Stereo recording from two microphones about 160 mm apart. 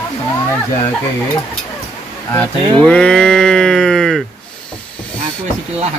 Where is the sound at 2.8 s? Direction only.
5° left (ahead or behind).